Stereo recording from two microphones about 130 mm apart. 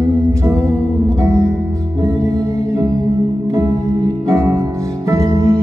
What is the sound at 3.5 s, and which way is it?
Music, 25° right (ahead or behind).